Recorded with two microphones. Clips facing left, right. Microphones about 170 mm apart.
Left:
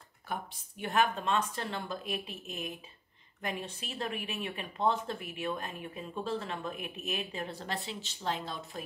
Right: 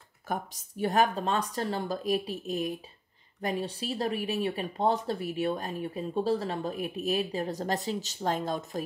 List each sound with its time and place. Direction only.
0.3 s speech: 40° right (ahead or behind)